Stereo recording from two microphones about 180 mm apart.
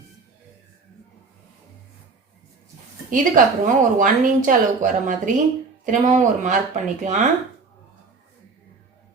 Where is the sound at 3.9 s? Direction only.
45° right (ahead or behind).